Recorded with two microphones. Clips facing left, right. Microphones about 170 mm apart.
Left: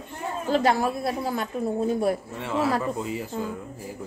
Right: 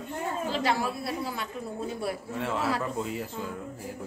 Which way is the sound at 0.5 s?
45° left (ahead or behind).